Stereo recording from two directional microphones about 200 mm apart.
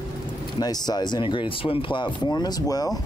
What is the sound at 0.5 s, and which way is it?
Speech, 20° left (ahead or behind).